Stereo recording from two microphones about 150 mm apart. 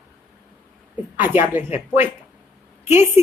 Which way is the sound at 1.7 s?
45° left (ahead or behind).